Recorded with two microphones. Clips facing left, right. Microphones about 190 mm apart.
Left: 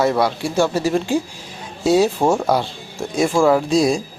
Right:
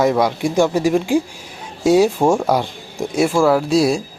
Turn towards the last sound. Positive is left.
turn(degrees=-5)  # may be behind; listen again after turning